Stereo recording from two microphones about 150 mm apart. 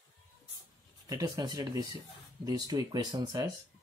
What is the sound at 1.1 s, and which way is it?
Speech, 25° right (ahead or behind).